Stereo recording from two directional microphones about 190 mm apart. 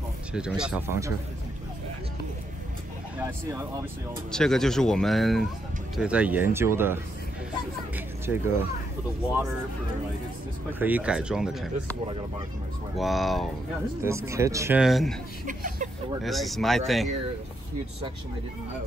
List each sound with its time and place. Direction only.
0.3 s speech: 5° right (ahead or behind)
3.2 s speech: 15° right (ahead or behind)
4.3 s speech: 5° left (ahead or behind)
10.7 s speech: 10° right (ahead or behind)
12.9 s speech: centre (ahead or behind)
14.0 s speech: 15° right (ahead or behind)
14.8 s speech: centre (ahead or behind)
15.4 s speech: 45° right (ahead or behind)
16.2 s speech: centre (ahead or behind)